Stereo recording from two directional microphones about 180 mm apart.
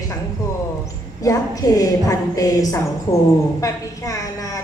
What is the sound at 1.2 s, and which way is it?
A woman's voice, 20° left (ahead or behind).